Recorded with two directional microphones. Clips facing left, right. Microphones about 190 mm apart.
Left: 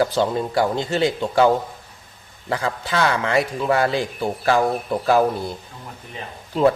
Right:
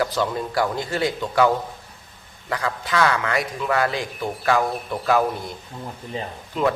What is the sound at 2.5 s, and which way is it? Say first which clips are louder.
A man's voice: left 2 dB; 30° left (ahead or behind).